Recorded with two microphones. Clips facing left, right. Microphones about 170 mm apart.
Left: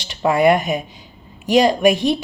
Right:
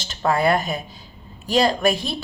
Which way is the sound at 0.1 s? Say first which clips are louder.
Left 5 dB; 15° left (ahead or behind).